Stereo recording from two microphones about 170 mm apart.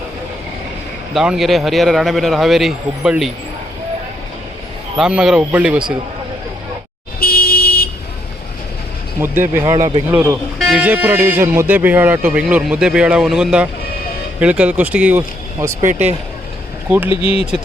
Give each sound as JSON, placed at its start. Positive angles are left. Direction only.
{"t": 1.1, "sound": "a man's voice", "side_deg": -5}
{"t": 4.9, "sound": "speech", "side_deg": -5}
{"t": 7.2, "sound": "vehicle", "side_deg": 60}
{"t": 9.2, "sound": "speech", "side_deg": -15}
{"t": 9.7, "sound": "speech", "side_deg": -25}
{"t": 10.1, "sound": "speech", "side_deg": -10}
{"t": 17.1, "sound": "speech", "side_deg": 30}